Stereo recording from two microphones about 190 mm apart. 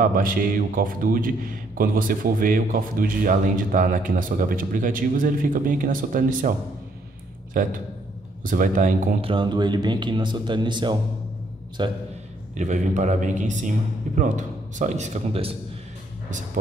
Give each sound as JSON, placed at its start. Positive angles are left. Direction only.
{"t": 0.0, "sound": "a man's voice", "side_deg": -45}
{"t": 8.5, "sound": "a man's voice", "side_deg": -45}
{"t": 9.2, "sound": "speech", "side_deg": -25}
{"t": 12.5, "sound": "speech", "side_deg": -40}